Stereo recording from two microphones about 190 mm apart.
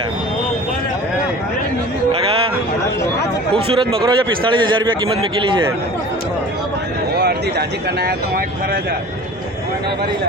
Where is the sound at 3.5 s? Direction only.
30° right (ahead or behind).